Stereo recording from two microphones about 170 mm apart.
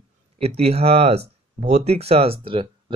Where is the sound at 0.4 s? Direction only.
40° right (ahead or behind).